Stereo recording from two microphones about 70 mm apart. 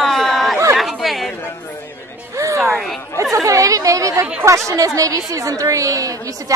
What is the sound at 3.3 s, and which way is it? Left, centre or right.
A woman's voice, right.